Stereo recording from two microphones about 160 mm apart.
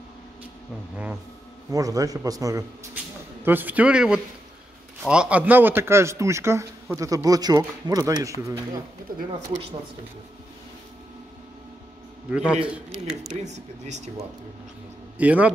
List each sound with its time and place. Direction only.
1.7 s a man's voice: 20° right (ahead or behind)
12.3 s a man's voice: 5° right (ahead or behind)
13.3 s speech: 45° right (ahead or behind)
15.1 s a man's voice: 10° right (ahead or behind)